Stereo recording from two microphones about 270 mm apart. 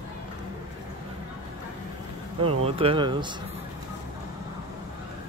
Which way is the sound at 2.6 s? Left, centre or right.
Centre.